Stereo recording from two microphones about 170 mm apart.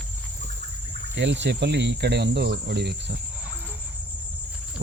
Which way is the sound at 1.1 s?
90° right.